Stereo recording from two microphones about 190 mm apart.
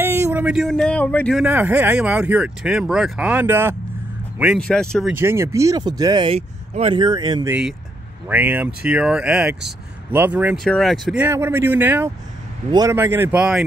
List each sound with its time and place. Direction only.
0.0 s speech: 10° right (ahead or behind); by 1.4 s 5° left (ahead or behind)
1.4 s speech: 10° right (ahead or behind)
4.6 s speech: 5° left (ahead or behind)
5.1 s speech: 15° right (ahead or behind)
8.3 s speech: 10° right (ahead or behind)
11.2 s speech: 10° right (ahead or behind)